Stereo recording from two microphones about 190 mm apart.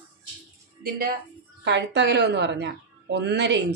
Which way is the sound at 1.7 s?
65° right (ahead or behind).